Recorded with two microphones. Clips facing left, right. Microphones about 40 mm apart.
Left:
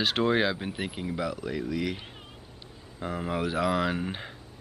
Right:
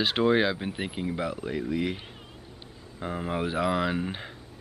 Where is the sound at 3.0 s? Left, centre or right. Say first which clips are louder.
Even; centre.